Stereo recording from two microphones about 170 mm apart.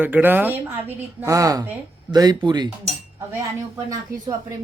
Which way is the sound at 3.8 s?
20° right (ahead or behind).